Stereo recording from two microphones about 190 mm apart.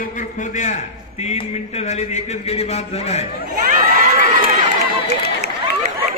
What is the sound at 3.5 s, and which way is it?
Crowd, 45° right (ahead or behind).